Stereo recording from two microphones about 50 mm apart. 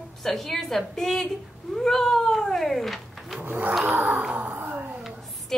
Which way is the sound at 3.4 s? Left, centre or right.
Right.